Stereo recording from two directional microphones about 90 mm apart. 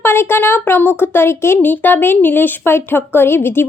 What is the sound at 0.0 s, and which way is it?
Speech, 25° left (ahead or behind).